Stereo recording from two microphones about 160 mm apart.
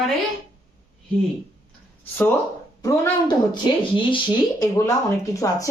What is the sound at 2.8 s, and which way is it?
Speech, 20° left (ahead or behind).